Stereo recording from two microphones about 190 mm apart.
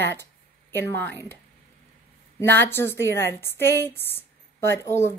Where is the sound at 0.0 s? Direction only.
10° left (ahead or behind).